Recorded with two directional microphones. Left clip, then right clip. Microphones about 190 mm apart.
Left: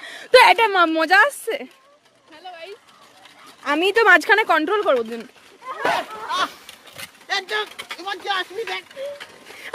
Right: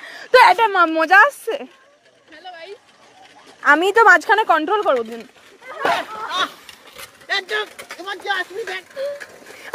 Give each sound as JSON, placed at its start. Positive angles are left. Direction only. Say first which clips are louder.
{"t": 0.0, "sound": "speech", "louder": "right 1 dB", "side_deg": 25}
{"t": 2.3, "sound": "a sound", "louder": "right 1 dB", "side_deg": 25}
{"t": 3.6, "sound": "speech", "louder": "right 6 dB", "side_deg": 10}
{"t": 4.0, "sound": "speech", "louder": "left 1 dB", "side_deg": 25}
{"t": 5.9, "sound": "a sound", "louder": "right 1 dB", "side_deg": 5}
{"t": 7.2, "sound": "speech", "louder": "right 2 dB", "side_deg": 15}
{"t": 7.7, "sound": "speech", "louder": "even", "side_deg": 0}
{"t": 8.9, "sound": "vehicle", "louder": "right 5 dB", "side_deg": 0}